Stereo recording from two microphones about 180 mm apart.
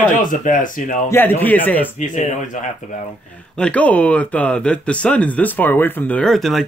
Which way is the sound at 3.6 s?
5° left (ahead or behind).